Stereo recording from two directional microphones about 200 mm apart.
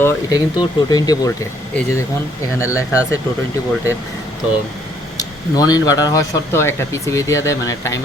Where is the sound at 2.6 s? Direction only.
15° left (ahead or behind).